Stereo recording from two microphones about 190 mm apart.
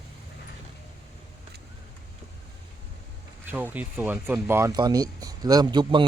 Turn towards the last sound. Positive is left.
turn(degrees=-25)  # may be behind; listen again after turning